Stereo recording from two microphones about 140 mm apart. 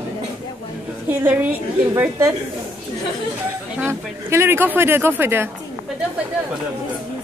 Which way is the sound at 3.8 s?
20° right (ahead or behind).